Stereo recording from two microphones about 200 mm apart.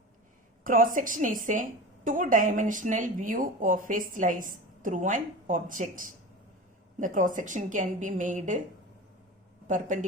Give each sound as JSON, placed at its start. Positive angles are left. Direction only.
{"t": 0.6, "sound": "a woman's voice", "side_deg": -45}
{"t": 9.6, "sound": "speech", "side_deg": -40}